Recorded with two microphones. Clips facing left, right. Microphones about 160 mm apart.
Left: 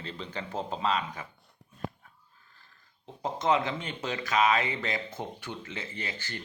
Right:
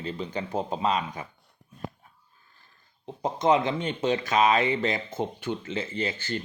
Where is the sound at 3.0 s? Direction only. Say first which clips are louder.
Right 4 dB; 20° right (ahead or behind).